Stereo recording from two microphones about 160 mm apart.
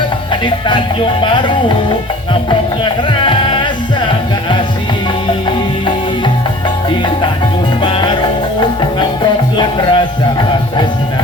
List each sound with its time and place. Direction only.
0.7 s music: 30° left (ahead or behind)
7.8 s music: 30° left (ahead or behind)
9.6 s music: 30° left (ahead or behind)